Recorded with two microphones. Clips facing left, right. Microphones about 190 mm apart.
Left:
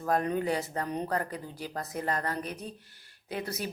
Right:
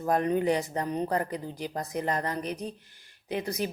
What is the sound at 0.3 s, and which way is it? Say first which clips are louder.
A woman's voice: right 4 dB; 20° right (ahead or behind).